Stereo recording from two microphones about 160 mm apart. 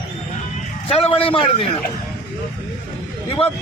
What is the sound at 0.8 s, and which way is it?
Speech, 35° left (ahead or behind).